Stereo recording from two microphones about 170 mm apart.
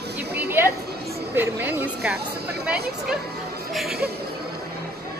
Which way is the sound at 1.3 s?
10° right (ahead or behind).